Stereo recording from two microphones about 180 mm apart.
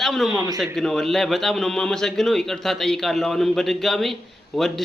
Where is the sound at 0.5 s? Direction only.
Centre (ahead or behind).